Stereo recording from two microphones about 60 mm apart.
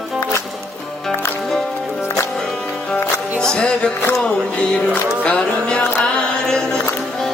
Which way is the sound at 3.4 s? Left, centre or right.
Centre.